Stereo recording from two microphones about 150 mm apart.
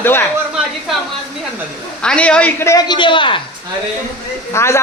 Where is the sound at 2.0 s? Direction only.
5° left (ahead or behind).